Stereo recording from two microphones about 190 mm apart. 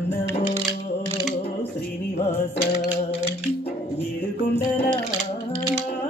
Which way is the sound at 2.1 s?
30° left (ahead or behind).